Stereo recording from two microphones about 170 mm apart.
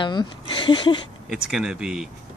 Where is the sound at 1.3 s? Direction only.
5° right (ahead or behind).